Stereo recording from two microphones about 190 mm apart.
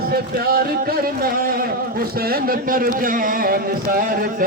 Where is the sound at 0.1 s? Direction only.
55° right (ahead or behind).